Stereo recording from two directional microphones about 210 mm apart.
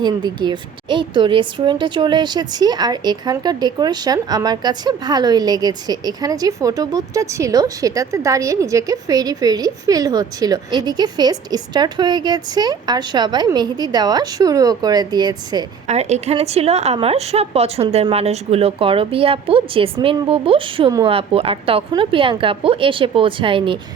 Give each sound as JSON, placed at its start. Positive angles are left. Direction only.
{"t": 0.0, "sound": "speech", "side_deg": -20}
{"t": 15.9, "sound": "speech", "side_deg": -30}